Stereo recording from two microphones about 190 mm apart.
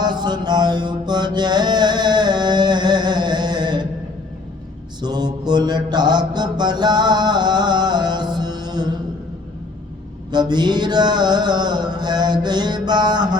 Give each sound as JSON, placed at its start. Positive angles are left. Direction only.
{"t": 0.0, "sound": "mantra", "side_deg": -20}
{"t": 4.9, "sound": "mantra", "side_deg": -20}
{"t": 10.3, "sound": "music", "side_deg": -20}